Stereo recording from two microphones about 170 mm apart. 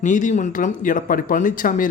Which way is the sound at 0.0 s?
45° left (ahead or behind).